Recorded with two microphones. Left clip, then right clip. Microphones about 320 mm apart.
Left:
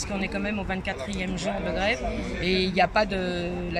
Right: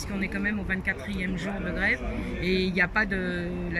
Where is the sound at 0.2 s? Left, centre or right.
Centre.